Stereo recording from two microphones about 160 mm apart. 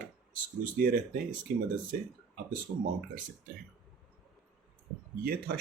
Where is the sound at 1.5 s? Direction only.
75° right (ahead or behind).